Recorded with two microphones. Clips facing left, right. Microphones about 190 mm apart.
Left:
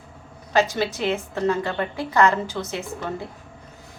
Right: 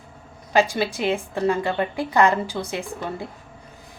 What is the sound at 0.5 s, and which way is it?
A woman's voice, 10° right (ahead or behind).